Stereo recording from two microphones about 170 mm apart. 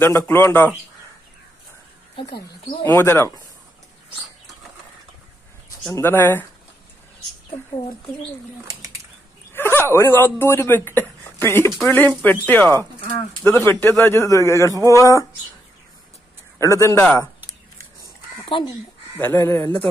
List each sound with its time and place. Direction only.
0.0 s a man's voice: 15° left (ahead or behind)
2.8 s a man's voice: 15° left (ahead or behind)
5.9 s a man's voice: 15° left (ahead or behind)
9.5 s a man's voice: 15° left (ahead or behind)
16.5 s a man's voice: 15° left (ahead or behind)
18.5 s speech: 30° left (ahead or behind)
19.1 s a man's voice: 15° left (ahead or behind)